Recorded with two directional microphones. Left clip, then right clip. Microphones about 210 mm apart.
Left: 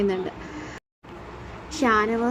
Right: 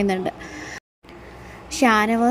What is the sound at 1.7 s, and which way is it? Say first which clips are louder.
Speech: right 3 dB; 30° right (ahead or behind).